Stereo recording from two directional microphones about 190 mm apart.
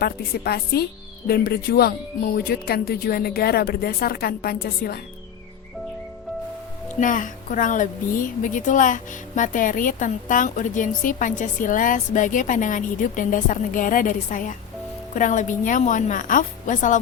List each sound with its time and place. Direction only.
0.0 s a woman's voice: 55° left (ahead or behind)
7.0 s speech: 45° left (ahead or behind)